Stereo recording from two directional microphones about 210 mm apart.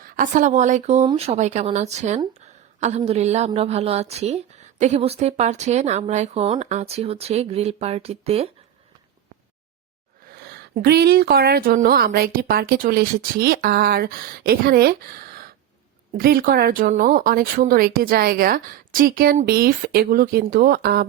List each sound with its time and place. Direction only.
0.0 s speech: 40° right (ahead or behind)
10.3 s a woman's voice: 50° right (ahead or behind)